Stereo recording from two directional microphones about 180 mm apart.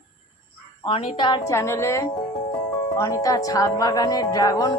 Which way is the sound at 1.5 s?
15° left (ahead or behind).